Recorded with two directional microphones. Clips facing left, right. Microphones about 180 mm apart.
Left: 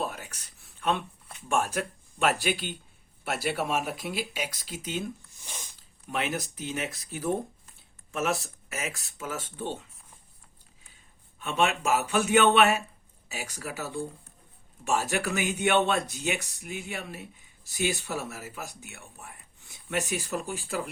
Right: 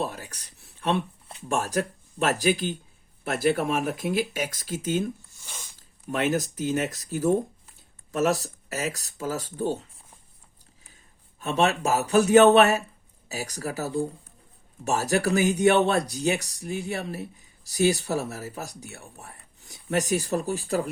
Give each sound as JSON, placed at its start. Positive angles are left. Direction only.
{"t": 0.0, "sound": "speech", "side_deg": -35}
{"t": 11.3, "sound": "speech", "side_deg": -40}